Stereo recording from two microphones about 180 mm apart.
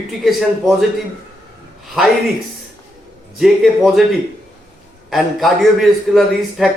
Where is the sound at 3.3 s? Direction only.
Centre (ahead or behind).